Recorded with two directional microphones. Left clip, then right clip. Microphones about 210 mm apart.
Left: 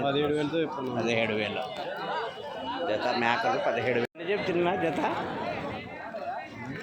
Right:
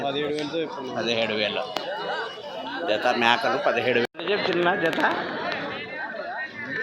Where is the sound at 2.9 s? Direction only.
Centre (ahead or behind).